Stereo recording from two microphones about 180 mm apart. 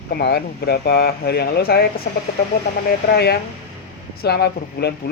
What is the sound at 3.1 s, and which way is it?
Speech, 65° left (ahead or behind).